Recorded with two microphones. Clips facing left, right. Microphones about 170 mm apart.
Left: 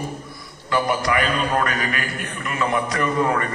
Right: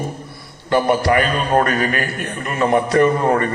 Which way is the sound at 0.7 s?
35° right (ahead or behind).